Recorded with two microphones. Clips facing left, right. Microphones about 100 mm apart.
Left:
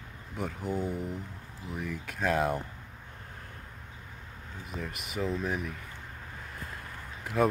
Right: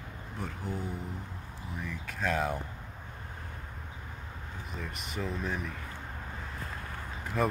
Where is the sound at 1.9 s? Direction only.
5° left (ahead or behind).